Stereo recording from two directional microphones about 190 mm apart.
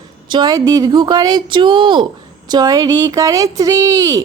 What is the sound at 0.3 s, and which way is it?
Speech, 20° right (ahead or behind).